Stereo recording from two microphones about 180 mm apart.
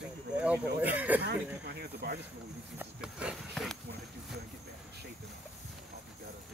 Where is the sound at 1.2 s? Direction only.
65° right (ahead or behind).